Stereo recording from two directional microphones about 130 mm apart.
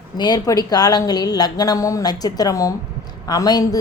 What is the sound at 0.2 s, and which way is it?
A woman's voice, 30° left (ahead or behind).